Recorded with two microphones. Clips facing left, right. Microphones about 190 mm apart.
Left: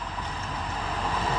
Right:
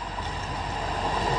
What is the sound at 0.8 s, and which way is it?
Vehicle, 35° right (ahead or behind).